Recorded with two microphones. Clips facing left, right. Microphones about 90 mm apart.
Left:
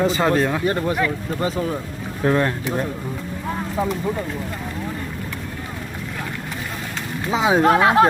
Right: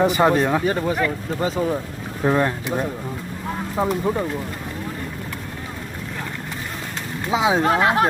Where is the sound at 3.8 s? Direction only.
30° right (ahead or behind).